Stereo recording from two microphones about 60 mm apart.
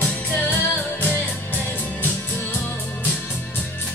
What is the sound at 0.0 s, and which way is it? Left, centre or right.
Music, left.